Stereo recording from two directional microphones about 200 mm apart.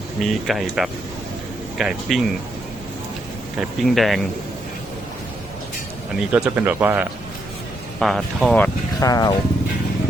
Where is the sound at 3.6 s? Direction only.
Centre (ahead or behind).